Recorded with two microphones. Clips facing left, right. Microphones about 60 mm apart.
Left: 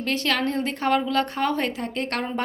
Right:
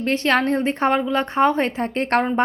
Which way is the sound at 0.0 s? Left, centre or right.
Right.